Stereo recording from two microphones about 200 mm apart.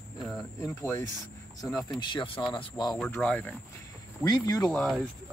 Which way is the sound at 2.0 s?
25° left (ahead or behind).